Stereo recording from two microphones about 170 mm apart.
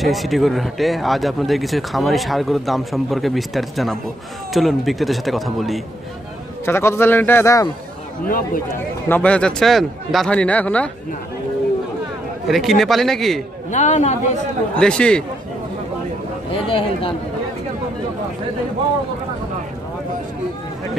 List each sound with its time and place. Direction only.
0.0 s speech: centre (ahead or behind)
6.6 s a man's voice: 15° left (ahead or behind)
8.3 s speech: 55° left (ahead or behind)
9.1 s a man's voice: 5° left (ahead or behind)
12.4 s speech: centre (ahead or behind)
13.7 s a man's voice: 45° left (ahead or behind)
14.8 s speech: 5° left (ahead or behind)
16.6 s speech: 30° left (ahead or behind)